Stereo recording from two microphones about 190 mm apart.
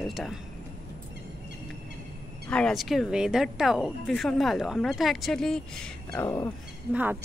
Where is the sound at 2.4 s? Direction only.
5° left (ahead or behind).